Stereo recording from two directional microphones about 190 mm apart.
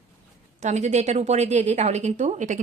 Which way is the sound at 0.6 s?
40° right (ahead or behind).